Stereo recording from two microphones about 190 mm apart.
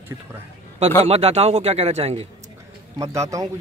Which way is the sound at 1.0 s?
35° right (ahead or behind).